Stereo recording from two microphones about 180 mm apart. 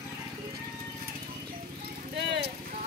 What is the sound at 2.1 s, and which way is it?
Vehicle, 70° right (ahead or behind).